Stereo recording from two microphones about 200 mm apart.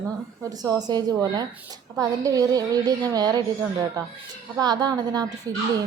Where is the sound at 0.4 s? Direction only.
20° right (ahead or behind).